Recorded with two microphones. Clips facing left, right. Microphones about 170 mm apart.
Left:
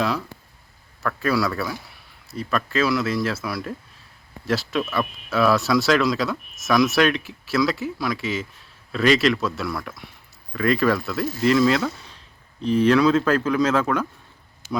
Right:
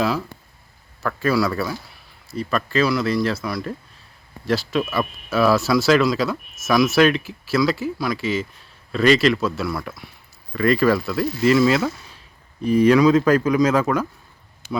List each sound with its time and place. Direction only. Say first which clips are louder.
1.0 s speech: right 2 dB; centre (ahead or behind)
14.6 s speech: right 1 dB; 60° right (ahead or behind)